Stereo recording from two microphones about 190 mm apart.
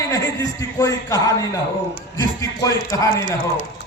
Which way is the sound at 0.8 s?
15° left (ahead or behind).